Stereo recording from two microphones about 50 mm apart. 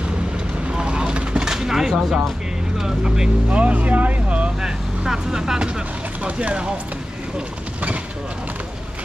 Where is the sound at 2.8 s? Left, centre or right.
Centre.